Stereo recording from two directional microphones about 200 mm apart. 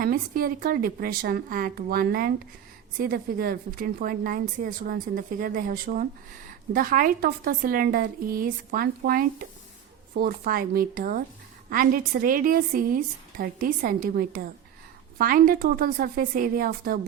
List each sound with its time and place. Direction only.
0.0 s a woman's voice: 45° right (ahead or behind)